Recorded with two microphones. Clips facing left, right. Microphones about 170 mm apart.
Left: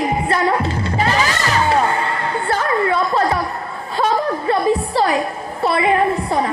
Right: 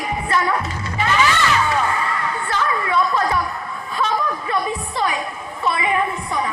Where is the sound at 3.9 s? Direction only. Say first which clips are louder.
Left 4 dB; 35° left (ahead or behind).